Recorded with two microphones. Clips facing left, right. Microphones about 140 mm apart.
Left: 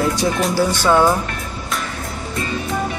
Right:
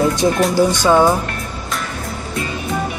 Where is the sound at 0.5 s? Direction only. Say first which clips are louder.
Right 1 dB; 15° right (ahead or behind).